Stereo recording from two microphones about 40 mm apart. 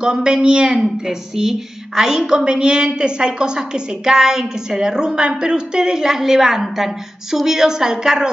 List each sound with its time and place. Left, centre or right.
0.0 s a woman's voice: right